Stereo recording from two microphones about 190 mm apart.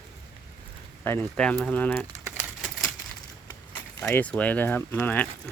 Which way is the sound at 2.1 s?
10° right (ahead or behind).